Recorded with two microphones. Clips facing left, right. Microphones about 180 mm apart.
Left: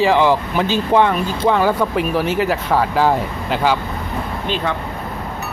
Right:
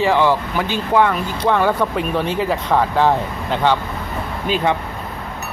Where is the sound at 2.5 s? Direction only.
5° left (ahead or behind).